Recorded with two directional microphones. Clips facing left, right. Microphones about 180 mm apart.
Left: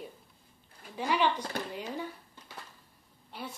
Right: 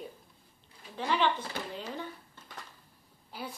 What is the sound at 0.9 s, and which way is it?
Speech, 10° left (ahead or behind).